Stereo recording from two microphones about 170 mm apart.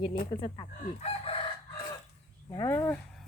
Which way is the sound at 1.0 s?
35° left (ahead or behind).